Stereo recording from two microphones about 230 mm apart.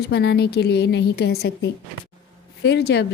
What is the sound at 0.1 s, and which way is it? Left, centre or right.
Speech, left.